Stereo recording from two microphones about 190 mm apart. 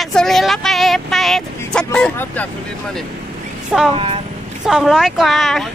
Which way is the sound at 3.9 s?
30° right (ahead or behind).